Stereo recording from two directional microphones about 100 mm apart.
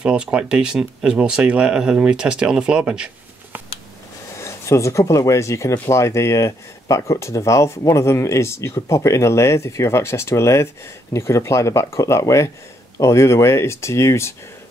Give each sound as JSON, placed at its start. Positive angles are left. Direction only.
{"t": 0.0, "sound": "speech", "side_deg": -10}
{"t": 4.4, "sound": "speech", "side_deg": 30}